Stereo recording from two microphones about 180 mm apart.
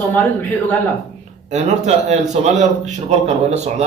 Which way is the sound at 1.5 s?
40° right (ahead or behind).